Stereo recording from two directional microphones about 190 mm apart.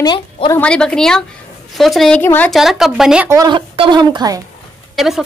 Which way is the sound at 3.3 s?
25° right (ahead or behind).